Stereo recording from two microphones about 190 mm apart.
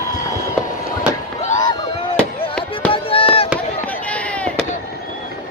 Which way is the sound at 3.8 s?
5° left (ahead or behind).